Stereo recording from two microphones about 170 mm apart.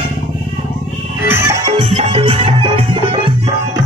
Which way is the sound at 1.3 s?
15° right (ahead or behind).